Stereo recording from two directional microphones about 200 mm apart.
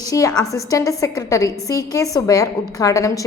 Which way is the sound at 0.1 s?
15° left (ahead or behind).